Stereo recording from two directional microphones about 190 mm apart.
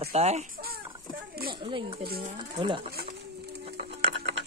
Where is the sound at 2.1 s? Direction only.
55° right (ahead or behind).